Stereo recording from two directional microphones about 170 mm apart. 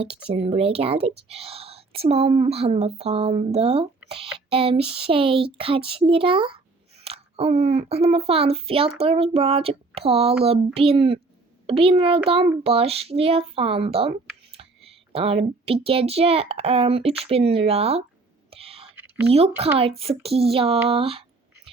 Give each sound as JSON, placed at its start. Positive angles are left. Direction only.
{"t": 0.0, "sound": "speech", "side_deg": -35}
{"t": 18.5, "sound": "whispering", "side_deg": -35}
{"t": 19.3, "sound": "speech", "side_deg": -35}